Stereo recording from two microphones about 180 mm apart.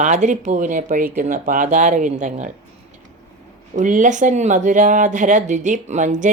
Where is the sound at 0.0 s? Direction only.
45° right (ahead or behind).